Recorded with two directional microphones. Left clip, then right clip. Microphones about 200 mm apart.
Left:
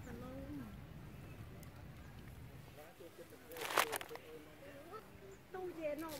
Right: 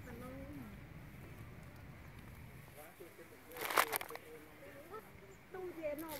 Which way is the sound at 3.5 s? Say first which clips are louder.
Right 2 dB; 20° right (ahead or behind).